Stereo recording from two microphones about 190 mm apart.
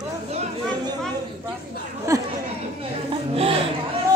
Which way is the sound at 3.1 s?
30° right (ahead or behind).